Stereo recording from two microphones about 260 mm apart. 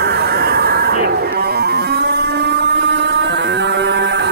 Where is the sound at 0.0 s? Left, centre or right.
Right.